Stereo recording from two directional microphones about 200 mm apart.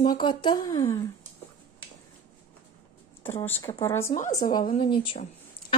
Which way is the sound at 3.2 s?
10° left (ahead or behind).